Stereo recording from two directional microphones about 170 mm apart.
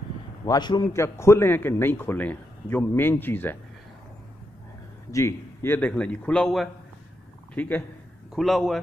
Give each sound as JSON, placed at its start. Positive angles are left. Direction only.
{"t": 0.5, "sound": "a man's voice", "side_deg": 25}
{"t": 5.1, "sound": "a man's voice", "side_deg": 15}
{"t": 8.4, "sound": "speech", "side_deg": 0}